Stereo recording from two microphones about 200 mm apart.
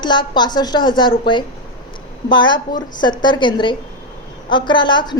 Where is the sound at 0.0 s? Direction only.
20° left (ahead or behind).